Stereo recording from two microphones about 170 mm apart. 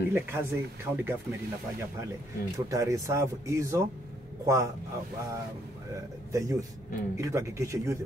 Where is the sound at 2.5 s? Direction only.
20° right (ahead or behind).